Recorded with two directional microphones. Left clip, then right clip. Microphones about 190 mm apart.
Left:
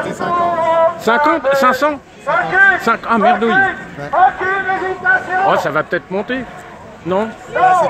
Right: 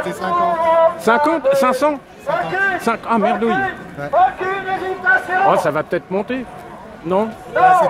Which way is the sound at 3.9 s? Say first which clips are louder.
Left 2 dB; 55° right (ahead or behind).